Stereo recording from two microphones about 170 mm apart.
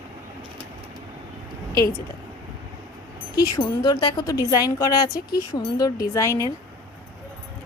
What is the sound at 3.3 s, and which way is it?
Speech, 25° left (ahead or behind).